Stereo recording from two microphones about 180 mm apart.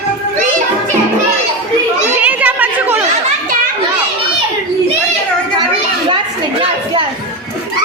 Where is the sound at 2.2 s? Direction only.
10° right (ahead or behind).